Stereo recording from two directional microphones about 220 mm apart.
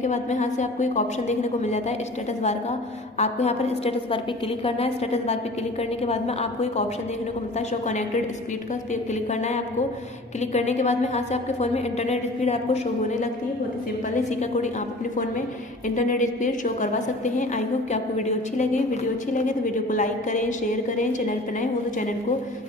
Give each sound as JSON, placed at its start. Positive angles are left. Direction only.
{"t": 0.0, "sound": "a woman's voice", "side_deg": 35}
{"t": 3.2, "sound": "a woman's voice", "side_deg": 30}
{"t": 9.3, "sound": "a woman's voice", "side_deg": 30}
{"t": 15.9, "sound": "a woman's voice", "side_deg": 35}